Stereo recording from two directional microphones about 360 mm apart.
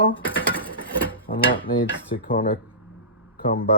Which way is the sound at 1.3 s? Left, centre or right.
Left.